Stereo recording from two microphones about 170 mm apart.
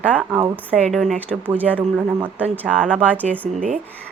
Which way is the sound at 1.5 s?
10° right (ahead or behind).